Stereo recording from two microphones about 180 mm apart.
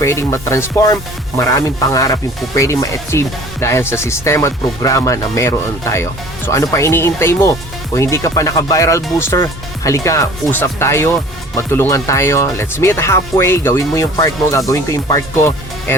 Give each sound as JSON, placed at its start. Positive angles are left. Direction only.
{"t": 0.0, "sound": "speech", "side_deg": 15}